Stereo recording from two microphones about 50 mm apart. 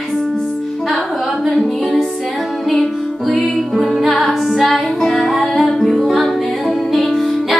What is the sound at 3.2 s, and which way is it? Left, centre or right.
Music, centre.